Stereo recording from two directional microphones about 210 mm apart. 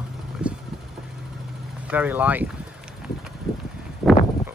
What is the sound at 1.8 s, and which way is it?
Speech, 10° right (ahead or behind).